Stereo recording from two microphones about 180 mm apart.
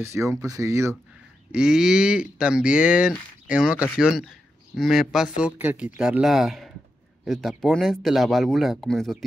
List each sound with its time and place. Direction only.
0.0 s speech: 15° right (ahead or behind)
1.5 s speech: 5° right (ahead or behind)